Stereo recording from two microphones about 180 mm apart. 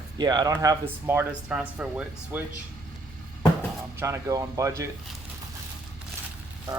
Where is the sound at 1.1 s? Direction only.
10° right (ahead or behind).